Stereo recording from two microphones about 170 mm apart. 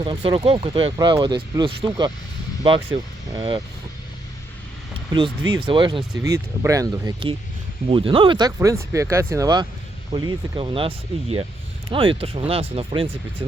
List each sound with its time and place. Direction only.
0.0 s speech: 30° right (ahead or behind)
5.1 s speech: 30° right (ahead or behind)
6.2 s speech: 20° right (ahead or behind); by 13.1 s 35° right (ahead or behind)